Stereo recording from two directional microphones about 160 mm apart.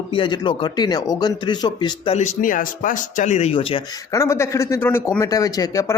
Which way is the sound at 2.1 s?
50° left (ahead or behind).